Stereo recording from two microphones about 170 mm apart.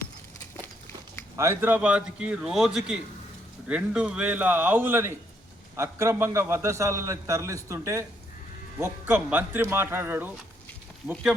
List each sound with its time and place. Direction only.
1.4 s a man's voice: 15° right (ahead or behind)